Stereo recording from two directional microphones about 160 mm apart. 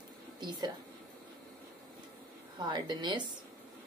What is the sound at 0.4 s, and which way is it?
Speech, 30° right (ahead or behind).